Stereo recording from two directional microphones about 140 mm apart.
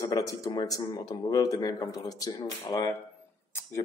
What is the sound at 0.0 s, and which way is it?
Speech, 25° left (ahead or behind).